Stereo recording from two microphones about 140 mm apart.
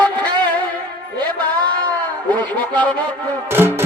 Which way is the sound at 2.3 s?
10° left (ahead or behind).